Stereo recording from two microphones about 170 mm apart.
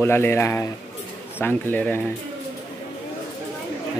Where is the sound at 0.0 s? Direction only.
15° left (ahead or behind).